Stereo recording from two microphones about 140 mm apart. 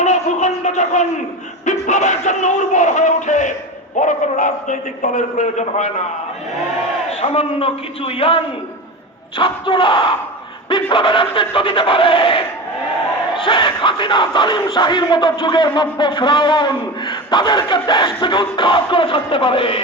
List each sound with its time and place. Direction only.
0.0 s a sound: 55° left (ahead or behind)
1.6 s a man's voice: 55° left (ahead or behind)
7.2 s speech: 40° left (ahead or behind)
9.4 s speech: 35° left (ahead or behind)